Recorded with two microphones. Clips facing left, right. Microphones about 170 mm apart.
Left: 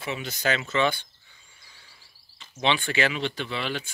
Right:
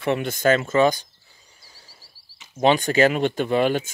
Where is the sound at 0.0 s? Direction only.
55° right (ahead or behind); by 1.0 s 40° right (ahead or behind).